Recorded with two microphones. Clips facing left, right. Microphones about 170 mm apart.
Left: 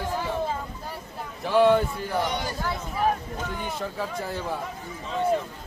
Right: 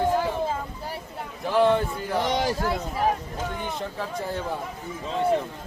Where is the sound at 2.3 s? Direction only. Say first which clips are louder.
Right 6 dB; 90° right.